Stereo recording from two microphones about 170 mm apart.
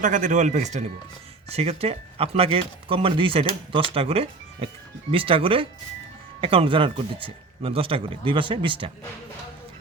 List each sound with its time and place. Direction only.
0.0 s speech: 50° right (ahead or behind); by 8.9 s 30° right (ahead or behind)